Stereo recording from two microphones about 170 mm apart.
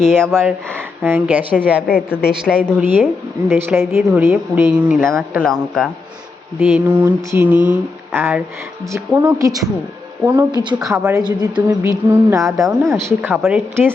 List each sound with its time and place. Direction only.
0.0 s speech: 5° left (ahead or behind)
1.0 s mantra: 10° right (ahead or behind)
2.3 s speech: 5° right (ahead or behind)
2.7 s mantra: 10° right (ahead or behind)
5.0 s speech: centre (ahead or behind)
6.6 s mantra: 10° right (ahead or behind)
10.2 s speech: 20° right (ahead or behind)
10.8 s speech: centre (ahead or behind)
11.0 s mantra: 20° right (ahead or behind)